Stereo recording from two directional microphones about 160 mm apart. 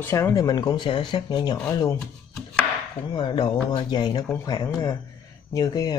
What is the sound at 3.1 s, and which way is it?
Speech, 30° left (ahead or behind).